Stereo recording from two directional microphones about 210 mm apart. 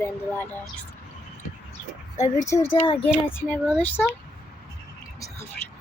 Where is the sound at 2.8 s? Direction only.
25° left (ahead or behind).